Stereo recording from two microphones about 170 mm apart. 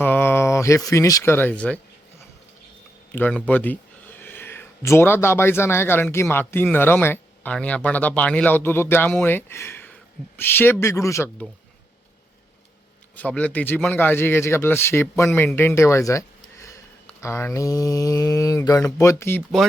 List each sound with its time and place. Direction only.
0.0 s speech: 10° left (ahead or behind)
3.1 s speech: 10° left (ahead or behind)
13.1 s speech: 10° left (ahead or behind)
17.1 s mantra: 15° left (ahead or behind)
18.9 s speech: 15° left (ahead or behind)